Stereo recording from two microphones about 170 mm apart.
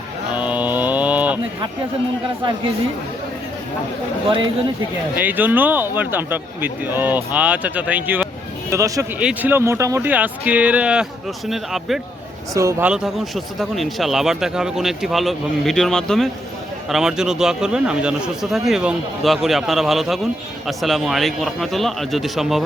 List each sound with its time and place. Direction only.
0.3 s mantra: 10° right (ahead or behind)
4.3 s speech: 30° right (ahead or behind)
5.1 s speech: 10° right (ahead or behind)
12.5 s speech: 15° right (ahead or behind)
12.9 s speech: centre (ahead or behind)